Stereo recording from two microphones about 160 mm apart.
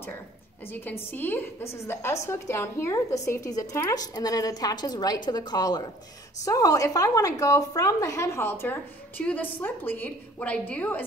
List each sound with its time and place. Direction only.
0.7 s a woman's voice: 15° left (ahead or behind)